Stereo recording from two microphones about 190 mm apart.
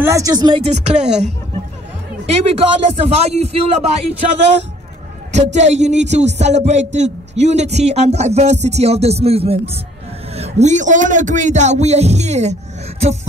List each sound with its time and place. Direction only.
0.0 s speech: 15° right (ahead or behind)
0.8 s speech: 35° right (ahead or behind)
5.3 s speech: 35° right (ahead or behind)